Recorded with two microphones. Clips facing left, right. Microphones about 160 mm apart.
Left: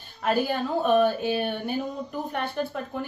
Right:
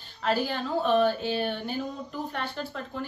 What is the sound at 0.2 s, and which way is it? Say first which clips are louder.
A woman's voice: left 3 dB; 10° left (ahead or behind).